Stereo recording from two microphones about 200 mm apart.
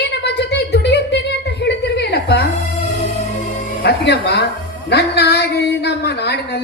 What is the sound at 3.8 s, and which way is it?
Music, 55° left (ahead or behind).